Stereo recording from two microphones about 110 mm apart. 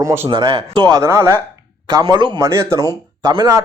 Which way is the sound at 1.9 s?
40° right (ahead or behind).